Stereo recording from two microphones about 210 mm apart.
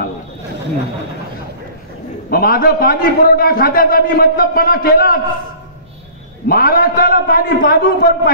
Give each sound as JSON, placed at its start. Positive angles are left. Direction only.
{"t": 2.2, "sound": "a man's voice", "side_deg": 45}
{"t": 6.4, "sound": "a man's voice", "side_deg": 45}